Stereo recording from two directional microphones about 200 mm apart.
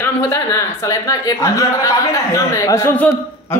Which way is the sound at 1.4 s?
15° left (ahead or behind).